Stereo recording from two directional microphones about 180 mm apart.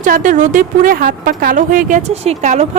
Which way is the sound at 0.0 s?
45° right (ahead or behind).